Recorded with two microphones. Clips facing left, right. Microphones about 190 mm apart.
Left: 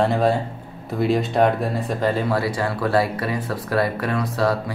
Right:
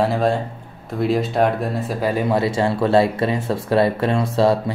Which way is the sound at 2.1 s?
20° right (ahead or behind).